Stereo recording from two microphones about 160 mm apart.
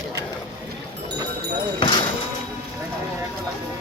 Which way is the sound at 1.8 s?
30° left (ahead or behind).